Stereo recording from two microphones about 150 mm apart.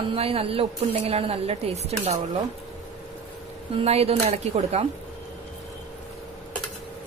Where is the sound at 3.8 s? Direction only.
40° right (ahead or behind).